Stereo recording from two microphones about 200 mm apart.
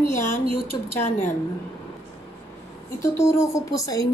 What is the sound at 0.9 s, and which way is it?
Speech, 10° left (ahead or behind).